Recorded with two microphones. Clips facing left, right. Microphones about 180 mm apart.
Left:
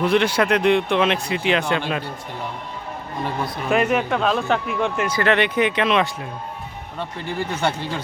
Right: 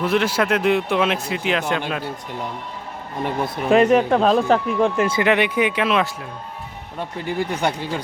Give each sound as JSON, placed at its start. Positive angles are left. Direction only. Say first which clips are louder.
{"t": 0.0, "sound": "speech", "louder": "left 1 dB", "side_deg": -5}
{"t": 3.7, "sound": "speech", "louder": "right 5 dB", "side_deg": -30}
{"t": 5.2, "sound": "speech", "louder": "left 1 dB", "side_deg": -10}